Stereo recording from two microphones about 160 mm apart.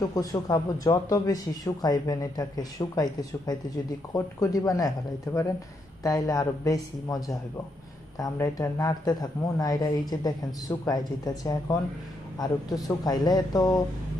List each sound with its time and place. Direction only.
0.0 s speech: 20° left (ahead or behind)